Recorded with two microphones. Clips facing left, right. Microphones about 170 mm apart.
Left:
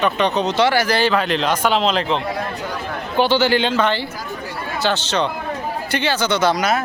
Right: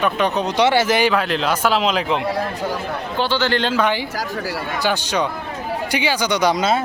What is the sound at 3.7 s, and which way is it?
Speech, 10° right (ahead or behind).